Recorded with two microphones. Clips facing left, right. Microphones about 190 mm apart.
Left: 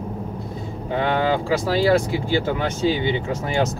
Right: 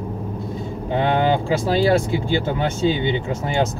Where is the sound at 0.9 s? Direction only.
25° right (ahead or behind).